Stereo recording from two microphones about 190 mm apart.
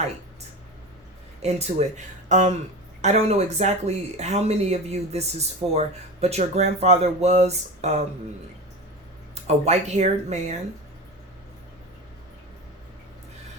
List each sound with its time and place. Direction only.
1.4 s speech: 35° right (ahead or behind)
9.3 s speech: 35° right (ahead or behind)